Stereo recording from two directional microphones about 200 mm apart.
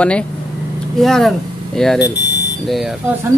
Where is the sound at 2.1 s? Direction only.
60° left (ahead or behind).